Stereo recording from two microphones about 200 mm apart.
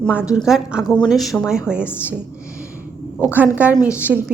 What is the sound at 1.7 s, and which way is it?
Speech, 10° left (ahead or behind).